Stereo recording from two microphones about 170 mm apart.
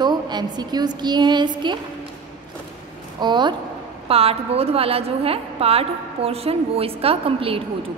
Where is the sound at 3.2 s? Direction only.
25° right (ahead or behind).